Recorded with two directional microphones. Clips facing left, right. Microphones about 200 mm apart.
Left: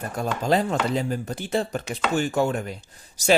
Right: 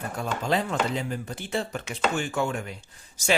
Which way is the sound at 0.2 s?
40° left (ahead or behind).